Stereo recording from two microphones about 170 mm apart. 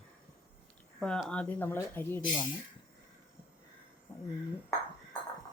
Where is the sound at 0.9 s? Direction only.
5° left (ahead or behind).